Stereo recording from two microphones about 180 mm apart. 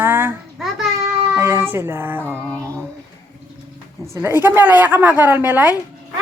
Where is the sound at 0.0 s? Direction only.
10° right (ahead or behind).